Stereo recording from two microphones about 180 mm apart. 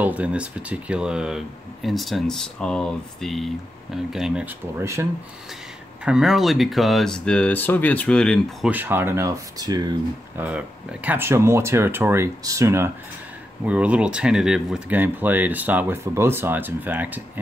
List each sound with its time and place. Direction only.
0.0 s speech: 10° right (ahead or behind)
4.7 s speech: 15° right (ahead or behind)
6.0 s speech: 5° right (ahead or behind)
8.7 s speech: 10° right (ahead or behind)
10.3 s speech: 10° right (ahead or behind)